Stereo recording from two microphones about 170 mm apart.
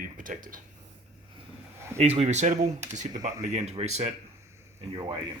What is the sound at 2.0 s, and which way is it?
Speech, 40° right (ahead or behind).